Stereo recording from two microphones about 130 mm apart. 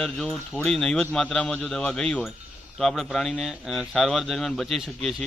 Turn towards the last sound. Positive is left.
turn(degrees=0)  # may be behind; listen again after turning